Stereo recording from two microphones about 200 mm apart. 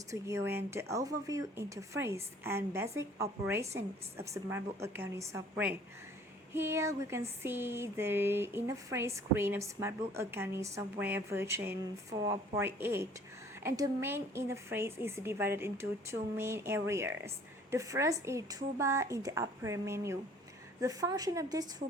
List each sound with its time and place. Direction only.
0.1 s speech: 15° right (ahead or behind)